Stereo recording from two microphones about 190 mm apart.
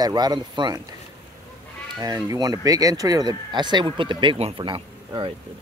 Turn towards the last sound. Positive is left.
turn(degrees=-25)  # may be behind; listen again after turning